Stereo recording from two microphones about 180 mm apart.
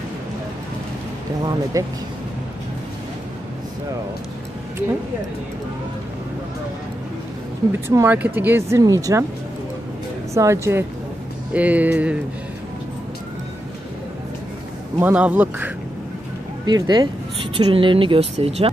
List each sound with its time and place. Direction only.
1.4 s speech: 20° right (ahead or behind)
7.9 s speech: 10° right (ahead or behind)
10.3 s speech: 15° right (ahead or behind)
15.0 s speech: 10° right (ahead or behind)
16.6 s speech: 25° right (ahead or behind)